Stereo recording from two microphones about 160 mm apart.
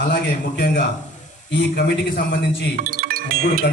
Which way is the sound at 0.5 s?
75° left (ahead or behind).